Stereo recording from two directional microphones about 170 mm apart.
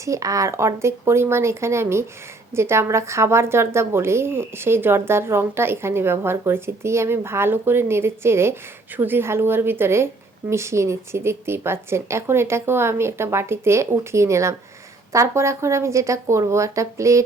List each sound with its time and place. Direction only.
0.0 s a woman's voice: 20° right (ahead or behind)